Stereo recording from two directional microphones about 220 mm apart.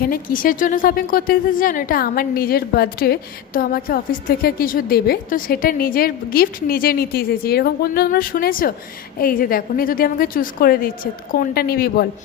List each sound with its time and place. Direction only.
0.0 s speech: 40° left (ahead or behind)